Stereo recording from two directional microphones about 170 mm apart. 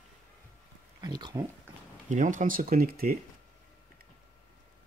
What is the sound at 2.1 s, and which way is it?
Speech, 50° right (ahead or behind).